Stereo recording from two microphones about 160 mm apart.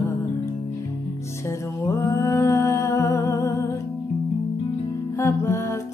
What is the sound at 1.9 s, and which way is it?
Music, 15° left (ahead or behind).